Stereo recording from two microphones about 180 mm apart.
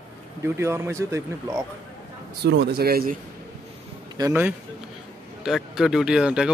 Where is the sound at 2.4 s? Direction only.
70° right (ahead or behind).